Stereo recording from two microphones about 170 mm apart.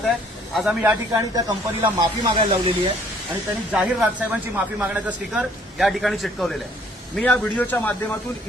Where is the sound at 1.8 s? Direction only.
30° right (ahead or behind).